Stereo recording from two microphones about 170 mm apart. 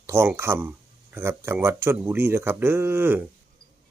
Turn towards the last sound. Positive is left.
turn(degrees=-15)  # may be behind; listen again after turning